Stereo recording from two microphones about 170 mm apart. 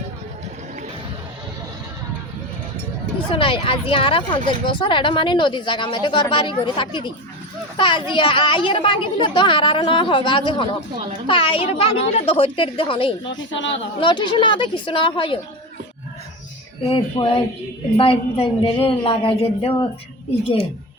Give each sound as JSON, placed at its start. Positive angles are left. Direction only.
{"t": 3.2, "sound": "a woman's voice", "side_deg": 30}
{"t": 13.2, "sound": "a woman's voice", "side_deg": 90}
{"t": 14.0, "sound": "speech", "side_deg": 30}
{"t": 16.8, "sound": "a woman's voice", "side_deg": 35}